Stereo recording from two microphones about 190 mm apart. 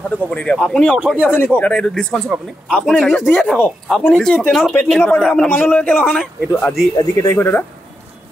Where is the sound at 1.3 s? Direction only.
10° left (ahead or behind).